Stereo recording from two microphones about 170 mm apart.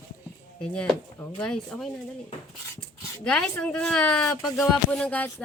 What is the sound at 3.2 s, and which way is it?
Speech, 5° left (ahead or behind).